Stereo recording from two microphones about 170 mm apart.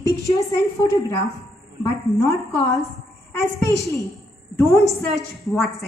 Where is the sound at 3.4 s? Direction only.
20° left (ahead or behind).